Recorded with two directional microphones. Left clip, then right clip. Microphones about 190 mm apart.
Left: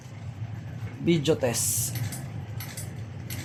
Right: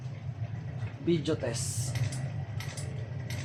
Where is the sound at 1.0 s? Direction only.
60° left (ahead or behind).